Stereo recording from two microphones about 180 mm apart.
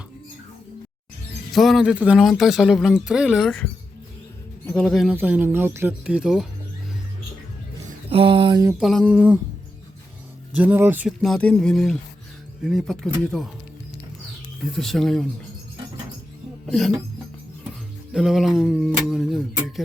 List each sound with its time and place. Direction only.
1.5 s speech: centre (ahead or behind)
8.1 s a sound: 30° right (ahead or behind)
8.8 s speech: centre (ahead or behind)
10.5 s speech: 10° right (ahead or behind)
11.2 s speech: 5° left (ahead or behind)
14.8 s speech: centre (ahead or behind)
16.6 s speech: centre (ahead or behind)
18.1 s speech: centre (ahead or behind)